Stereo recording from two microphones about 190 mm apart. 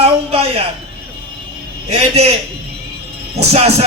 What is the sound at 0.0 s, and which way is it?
Music, 30° right (ahead or behind).